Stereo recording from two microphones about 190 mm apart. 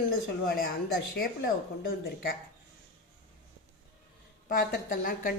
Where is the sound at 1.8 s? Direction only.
50° left (ahead or behind).